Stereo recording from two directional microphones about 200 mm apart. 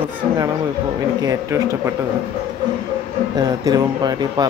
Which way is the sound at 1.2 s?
15° right (ahead or behind).